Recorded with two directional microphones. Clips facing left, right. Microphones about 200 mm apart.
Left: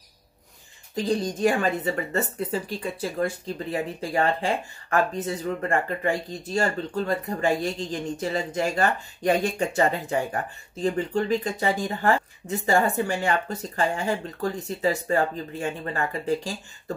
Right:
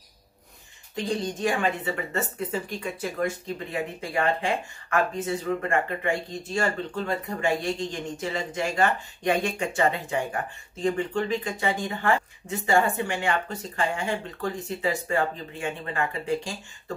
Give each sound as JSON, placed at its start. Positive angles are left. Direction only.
{"t": 0.9, "sound": "speech", "side_deg": 35}